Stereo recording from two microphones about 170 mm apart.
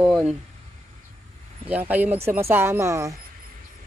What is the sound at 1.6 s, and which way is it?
Speech, 10° right (ahead or behind).